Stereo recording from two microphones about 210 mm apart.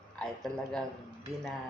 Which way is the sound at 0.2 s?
5° left (ahead or behind).